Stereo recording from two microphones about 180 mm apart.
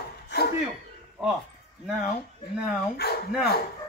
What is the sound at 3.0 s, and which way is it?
Speech, 65° left (ahead or behind).